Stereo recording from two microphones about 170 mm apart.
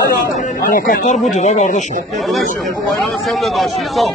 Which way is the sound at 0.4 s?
55° left (ahead or behind).